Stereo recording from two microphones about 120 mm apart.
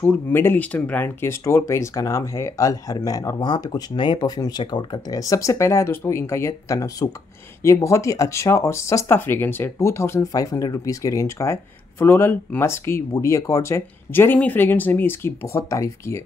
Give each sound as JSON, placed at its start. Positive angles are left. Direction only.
{"t": 0.0, "sound": "speech", "side_deg": 15}